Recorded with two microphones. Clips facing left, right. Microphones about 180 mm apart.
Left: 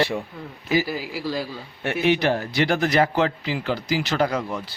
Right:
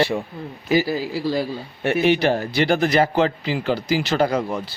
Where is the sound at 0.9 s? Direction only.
15° left (ahead or behind).